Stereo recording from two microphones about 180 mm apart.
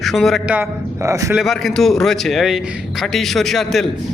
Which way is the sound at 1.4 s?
Centre (ahead or behind).